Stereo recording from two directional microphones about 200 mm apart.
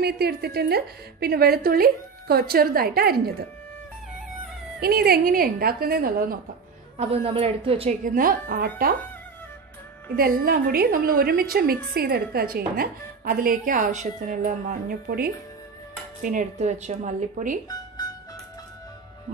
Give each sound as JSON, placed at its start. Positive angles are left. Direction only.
{"t": 0.0, "sound": "a woman's voice", "side_deg": -50}
{"t": 4.7, "sound": "a woman's voice", "side_deg": -50}
{"t": 7.0, "sound": "a woman's voice", "side_deg": -30}
{"t": 8.0, "sound": "a woman's voice", "side_deg": -45}
{"t": 10.1, "sound": "a woman's voice", "side_deg": -50}